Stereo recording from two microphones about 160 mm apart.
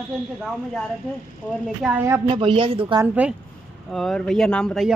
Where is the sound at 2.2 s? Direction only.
30° right (ahead or behind).